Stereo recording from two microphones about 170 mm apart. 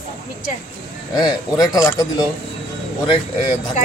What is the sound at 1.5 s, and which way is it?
Speech, 20° left (ahead or behind).